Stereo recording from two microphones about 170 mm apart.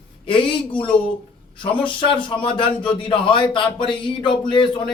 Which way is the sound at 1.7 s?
30° left (ahead or behind).